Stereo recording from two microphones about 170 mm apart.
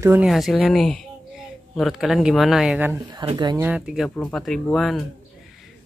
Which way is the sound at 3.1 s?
25° right (ahead or behind).